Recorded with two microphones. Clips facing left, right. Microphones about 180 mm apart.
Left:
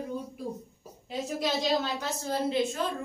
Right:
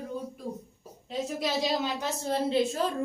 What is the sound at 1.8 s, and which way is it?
A woman's voice, 25° right (ahead or behind).